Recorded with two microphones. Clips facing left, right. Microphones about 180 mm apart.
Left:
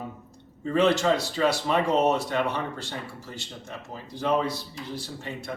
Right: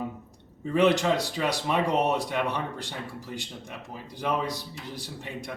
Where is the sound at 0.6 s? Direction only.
15° right (ahead or behind).